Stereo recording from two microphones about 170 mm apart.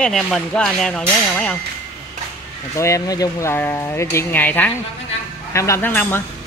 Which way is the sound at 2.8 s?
20° left (ahead or behind).